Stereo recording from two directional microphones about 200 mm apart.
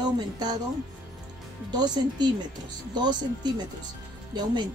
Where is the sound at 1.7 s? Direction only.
20° right (ahead or behind).